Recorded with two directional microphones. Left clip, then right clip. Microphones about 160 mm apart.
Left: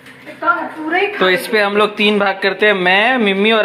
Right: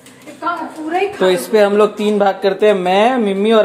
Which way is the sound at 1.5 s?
10° right (ahead or behind).